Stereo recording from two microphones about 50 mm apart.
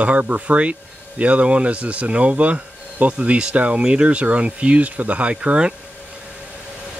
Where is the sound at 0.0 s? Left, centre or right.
Right.